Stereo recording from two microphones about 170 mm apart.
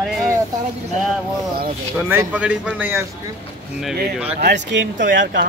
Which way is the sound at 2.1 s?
10° right (ahead or behind).